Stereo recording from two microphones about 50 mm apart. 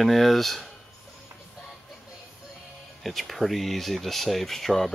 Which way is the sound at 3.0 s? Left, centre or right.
Centre.